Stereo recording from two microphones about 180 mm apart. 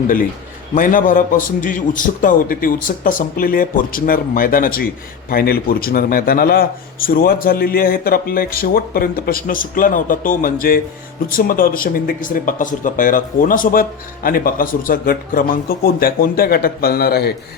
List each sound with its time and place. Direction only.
0.8 s a man's voice: 45° left (ahead or behind)